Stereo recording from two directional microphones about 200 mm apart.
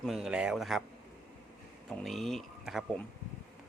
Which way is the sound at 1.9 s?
Centre (ahead or behind).